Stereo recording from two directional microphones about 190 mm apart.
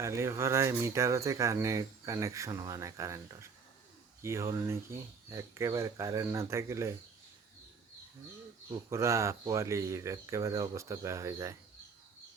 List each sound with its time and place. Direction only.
0.0 s speech: 15° right (ahead or behind)
8.9 s speech: 15° right (ahead or behind)